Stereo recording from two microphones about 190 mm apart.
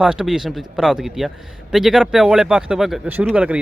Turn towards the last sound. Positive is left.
turn(degrees=-5)  # may be behind; listen again after turning